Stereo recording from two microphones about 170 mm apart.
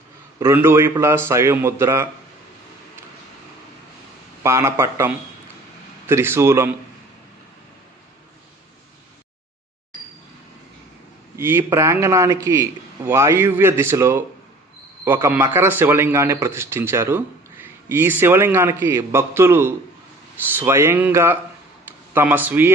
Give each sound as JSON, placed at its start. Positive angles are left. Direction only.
{"t": 0.3, "sound": "a man's voice", "side_deg": -15}
{"t": 4.4, "sound": "a man's voice", "side_deg": -15}
{"t": 11.3, "sound": "a man's voice", "side_deg": -15}